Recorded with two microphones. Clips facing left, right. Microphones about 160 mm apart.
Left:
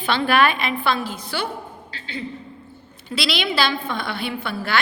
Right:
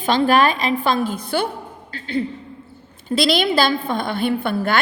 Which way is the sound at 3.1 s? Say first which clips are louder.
Right 7 dB; 50° right (ahead or behind).